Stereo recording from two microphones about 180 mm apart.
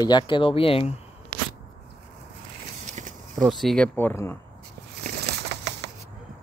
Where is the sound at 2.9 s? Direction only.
45° right (ahead or behind).